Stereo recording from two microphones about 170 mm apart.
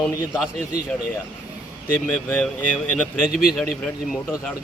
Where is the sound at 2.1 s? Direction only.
10° left (ahead or behind).